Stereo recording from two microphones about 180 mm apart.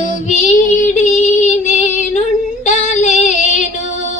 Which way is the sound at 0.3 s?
40° left (ahead or behind).